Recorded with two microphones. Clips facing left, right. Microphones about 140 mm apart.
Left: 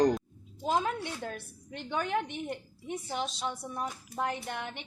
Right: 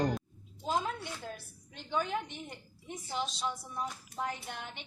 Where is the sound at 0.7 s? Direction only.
65° left (ahead or behind).